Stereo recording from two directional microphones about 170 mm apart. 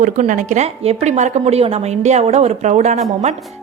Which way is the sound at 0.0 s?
45° right (ahead or behind).